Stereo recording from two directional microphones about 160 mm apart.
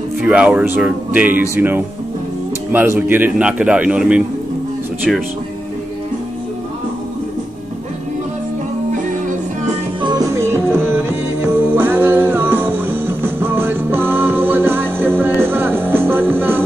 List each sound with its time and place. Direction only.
0.2 s speech: 5° right (ahead or behind)
10.0 s music: 20° right (ahead or behind)